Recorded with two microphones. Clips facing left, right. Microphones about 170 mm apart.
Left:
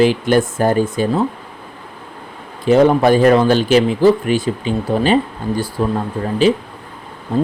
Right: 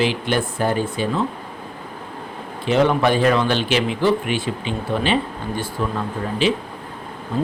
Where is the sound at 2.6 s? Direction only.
40° left (ahead or behind).